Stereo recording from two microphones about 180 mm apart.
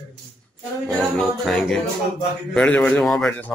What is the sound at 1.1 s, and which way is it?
Speech, centre (ahead or behind).